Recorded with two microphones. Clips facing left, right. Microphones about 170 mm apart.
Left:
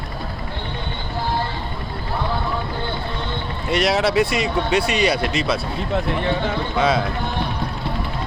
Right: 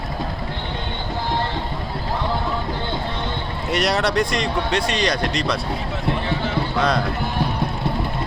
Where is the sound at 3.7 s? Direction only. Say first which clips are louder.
Left 2 dB; centre (ahead or behind).